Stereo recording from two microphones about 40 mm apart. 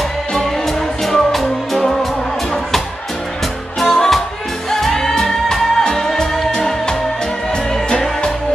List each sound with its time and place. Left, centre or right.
0.7 s music: centre
3.8 s music: centre